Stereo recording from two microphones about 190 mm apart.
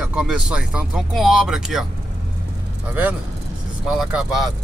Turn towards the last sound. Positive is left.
turn(degrees=0)  # may be behind; listen again after turning